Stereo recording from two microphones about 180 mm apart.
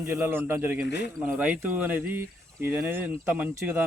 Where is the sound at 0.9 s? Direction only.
70° left (ahead or behind).